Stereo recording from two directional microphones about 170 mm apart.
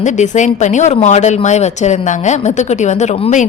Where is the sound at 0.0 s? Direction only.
45° left (ahead or behind).